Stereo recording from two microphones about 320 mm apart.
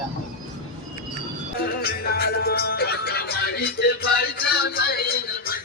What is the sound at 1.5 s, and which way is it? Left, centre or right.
Music, left.